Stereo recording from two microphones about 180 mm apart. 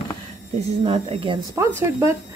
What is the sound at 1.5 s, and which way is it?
Speech, 15° right (ahead or behind).